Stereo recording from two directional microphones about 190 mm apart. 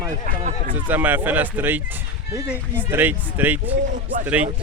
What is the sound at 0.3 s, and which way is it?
Speech, 45° right (ahead or behind).